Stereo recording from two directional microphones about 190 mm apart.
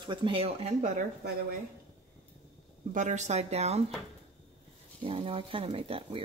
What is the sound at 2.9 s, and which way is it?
Speech, 40° right (ahead or behind).